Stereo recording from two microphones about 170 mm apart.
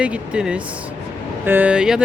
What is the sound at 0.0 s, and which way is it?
Speech, 5° right (ahead or behind).